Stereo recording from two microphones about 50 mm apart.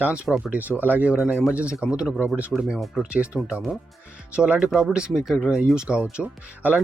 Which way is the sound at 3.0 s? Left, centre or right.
Right.